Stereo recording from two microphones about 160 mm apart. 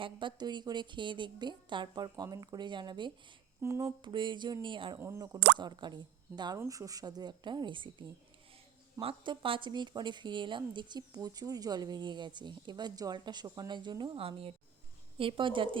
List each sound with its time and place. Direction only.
0.0 s a woman's voice: 30° right (ahead or behind)
3.6 s speech: 15° right (ahead or behind)
4.0 s a woman's voice: 30° right (ahead or behind)
4.9 s a woman's voice: 20° right (ahead or behind)